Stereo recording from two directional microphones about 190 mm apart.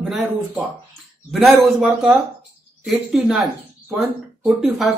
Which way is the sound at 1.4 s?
Centre (ahead or behind).